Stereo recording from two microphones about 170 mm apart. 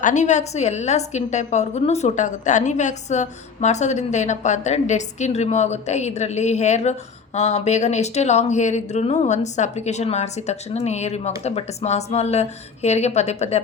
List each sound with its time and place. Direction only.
0.0 s a woman's voice: 45° left (ahead or behind)